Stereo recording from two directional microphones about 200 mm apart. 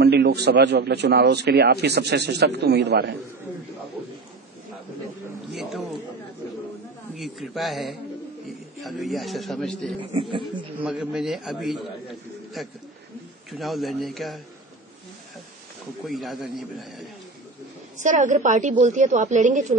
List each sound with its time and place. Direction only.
0.0 s a man's voice: 55° right (ahead or behind)
5.5 s a man's voice: centre (ahead or behind)
7.2 s a man's voice: centre (ahead or behind)
9.9 s speech: 25° right (ahead or behind)
10.8 s a man's voice: 5° right (ahead or behind)
16.1 s a man's voice: centre (ahead or behind)
17.9 s a woman's voice: 40° right (ahead or behind)